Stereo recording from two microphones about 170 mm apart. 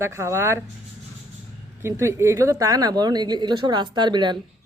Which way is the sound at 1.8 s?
15° right (ahead or behind).